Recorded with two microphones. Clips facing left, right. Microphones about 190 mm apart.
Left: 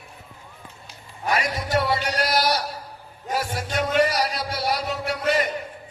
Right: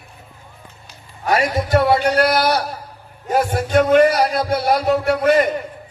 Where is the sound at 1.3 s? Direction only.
55° right (ahead or behind).